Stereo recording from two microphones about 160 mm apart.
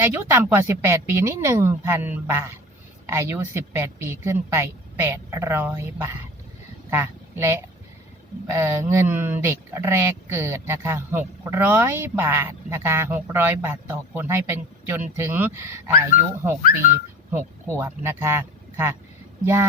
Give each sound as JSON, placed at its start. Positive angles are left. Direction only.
{"t": 0.0, "sound": "a woman's voice", "side_deg": -15}